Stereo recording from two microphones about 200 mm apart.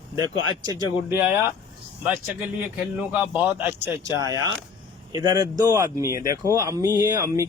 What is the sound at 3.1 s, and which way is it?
Speech, 5° right (ahead or behind).